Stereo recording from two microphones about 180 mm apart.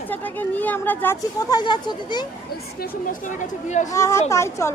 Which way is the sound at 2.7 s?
50° left (ahead or behind).